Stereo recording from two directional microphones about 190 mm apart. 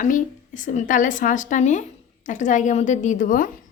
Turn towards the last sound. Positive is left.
turn(degrees=45)  # may be behind; listen again after turning